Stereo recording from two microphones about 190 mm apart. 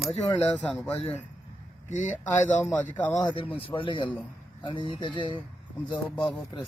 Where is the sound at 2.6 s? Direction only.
10° left (ahead or behind).